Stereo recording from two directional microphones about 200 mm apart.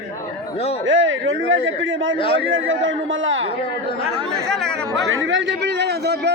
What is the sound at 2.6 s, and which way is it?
Speech, 70° right (ahead or behind).